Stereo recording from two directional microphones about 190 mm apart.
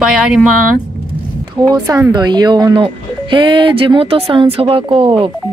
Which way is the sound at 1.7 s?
20° right (ahead or behind).